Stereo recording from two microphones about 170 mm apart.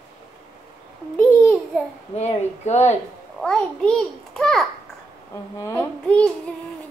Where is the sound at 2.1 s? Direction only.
40° left (ahead or behind).